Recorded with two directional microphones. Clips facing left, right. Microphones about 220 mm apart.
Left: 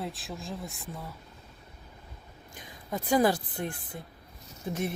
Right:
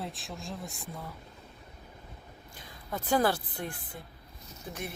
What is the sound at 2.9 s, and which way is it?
Speech, 15° left (ahead or behind).